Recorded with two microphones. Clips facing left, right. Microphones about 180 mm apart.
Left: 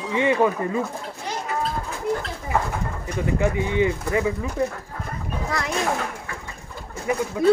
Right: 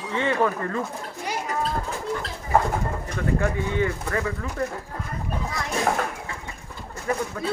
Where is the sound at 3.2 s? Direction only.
15° left (ahead or behind).